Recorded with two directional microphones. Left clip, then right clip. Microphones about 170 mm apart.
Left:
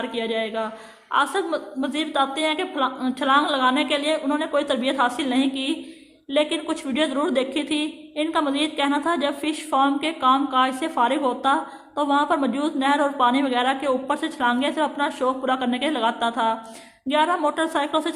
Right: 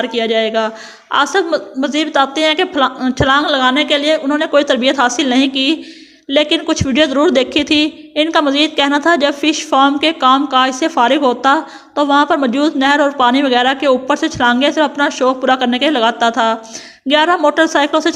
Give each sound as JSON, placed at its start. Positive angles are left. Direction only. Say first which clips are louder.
{"t": 0.0, "sound": "a man's voice", "louder": "right 11 dB", "side_deg": -35}